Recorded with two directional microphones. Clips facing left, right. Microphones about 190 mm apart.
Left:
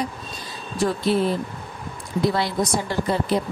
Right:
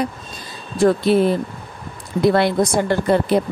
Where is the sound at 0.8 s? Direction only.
55° right (ahead or behind).